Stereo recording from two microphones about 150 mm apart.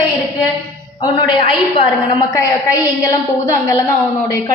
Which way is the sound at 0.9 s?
30° left (ahead or behind).